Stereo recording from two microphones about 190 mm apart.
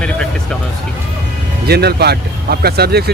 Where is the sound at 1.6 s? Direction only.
60° right (ahead or behind).